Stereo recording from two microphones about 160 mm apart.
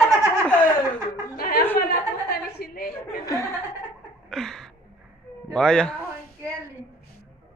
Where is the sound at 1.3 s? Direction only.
70° left (ahead or behind).